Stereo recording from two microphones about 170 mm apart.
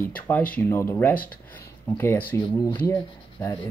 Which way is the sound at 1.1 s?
60° left (ahead or behind).